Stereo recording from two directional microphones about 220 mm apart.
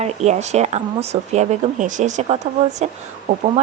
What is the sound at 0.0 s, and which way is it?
A woman's voice, 30° right (ahead or behind).